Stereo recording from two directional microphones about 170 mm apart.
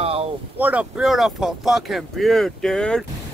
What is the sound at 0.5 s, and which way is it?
Speech, 10° right (ahead or behind).